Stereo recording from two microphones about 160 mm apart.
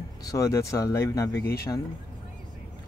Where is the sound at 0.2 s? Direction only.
20° left (ahead or behind).